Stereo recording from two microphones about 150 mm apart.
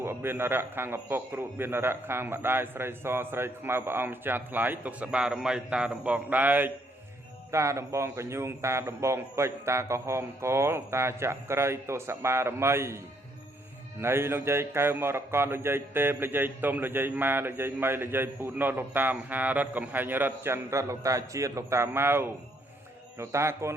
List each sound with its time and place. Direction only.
0.0 s a man's voice: 15° right (ahead or behind)
14.0 s a man's voice: 15° right (ahead or behind)